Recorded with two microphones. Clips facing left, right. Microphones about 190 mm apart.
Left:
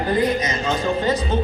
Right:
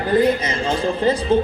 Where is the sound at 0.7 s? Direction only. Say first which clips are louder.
Right 2 dB; 30° right (ahead or behind).